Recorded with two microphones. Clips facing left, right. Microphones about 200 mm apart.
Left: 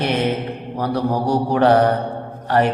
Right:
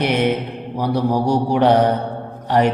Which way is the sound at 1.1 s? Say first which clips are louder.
Right 1 dB; 15° right (ahead or behind).